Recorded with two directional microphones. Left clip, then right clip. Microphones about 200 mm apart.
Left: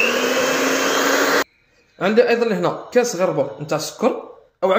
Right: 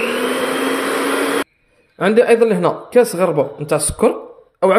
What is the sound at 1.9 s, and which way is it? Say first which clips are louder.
A woman's voice: right 4 dB; 35° right (ahead or behind).